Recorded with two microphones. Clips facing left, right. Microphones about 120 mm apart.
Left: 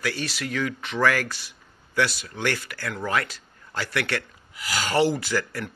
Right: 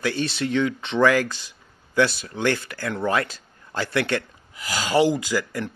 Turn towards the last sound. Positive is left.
turn(degrees=-15)  # may be behind; listen again after turning